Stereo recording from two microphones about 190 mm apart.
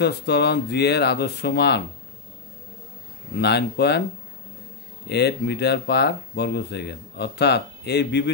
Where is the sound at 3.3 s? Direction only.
60° left (ahead or behind).